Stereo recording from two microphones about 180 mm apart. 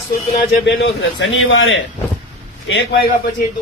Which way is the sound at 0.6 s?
80° left.